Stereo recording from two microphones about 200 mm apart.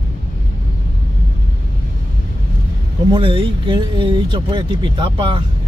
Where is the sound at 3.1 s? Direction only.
25° right (ahead or behind).